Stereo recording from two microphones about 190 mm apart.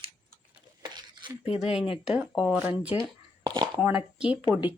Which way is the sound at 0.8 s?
25° right (ahead or behind).